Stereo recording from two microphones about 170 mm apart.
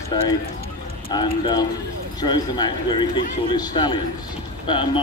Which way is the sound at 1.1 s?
25° left (ahead or behind).